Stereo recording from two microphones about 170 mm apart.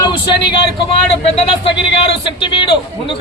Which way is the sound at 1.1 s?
35° left (ahead or behind).